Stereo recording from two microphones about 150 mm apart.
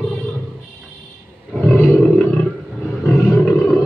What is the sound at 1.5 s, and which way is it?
Roar, 5° left (ahead or behind).